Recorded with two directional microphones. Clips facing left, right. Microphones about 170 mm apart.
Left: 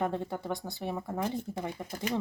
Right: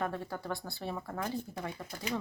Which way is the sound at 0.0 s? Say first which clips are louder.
Left 4 dB; 20° left (ahead or behind).